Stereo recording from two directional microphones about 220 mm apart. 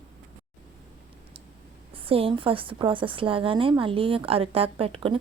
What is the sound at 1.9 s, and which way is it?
A woman's voice, 25° right (ahead or behind).